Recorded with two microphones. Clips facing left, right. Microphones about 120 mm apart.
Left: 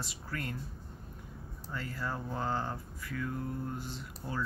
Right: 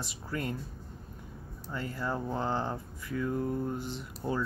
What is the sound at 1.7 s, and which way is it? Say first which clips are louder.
Speech: right 4 dB; 20° right (ahead or behind).